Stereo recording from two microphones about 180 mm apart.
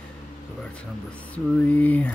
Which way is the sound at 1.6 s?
10° left (ahead or behind).